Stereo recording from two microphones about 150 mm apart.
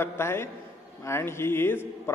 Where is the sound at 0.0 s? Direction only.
15° left (ahead or behind).